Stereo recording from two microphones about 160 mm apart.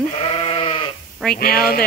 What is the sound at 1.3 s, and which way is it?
Speech, 70° left (ahead or behind).